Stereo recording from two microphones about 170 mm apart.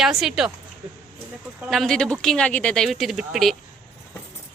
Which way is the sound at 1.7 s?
Centre (ahead or behind).